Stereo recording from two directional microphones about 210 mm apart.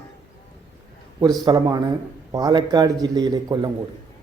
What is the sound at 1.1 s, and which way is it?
A man's voice, 20° right (ahead or behind).